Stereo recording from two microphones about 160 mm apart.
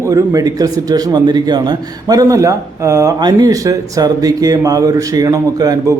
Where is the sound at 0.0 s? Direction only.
20° right (ahead or behind).